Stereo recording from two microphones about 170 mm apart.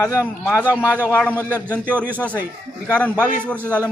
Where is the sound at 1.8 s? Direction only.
10° right (ahead or behind).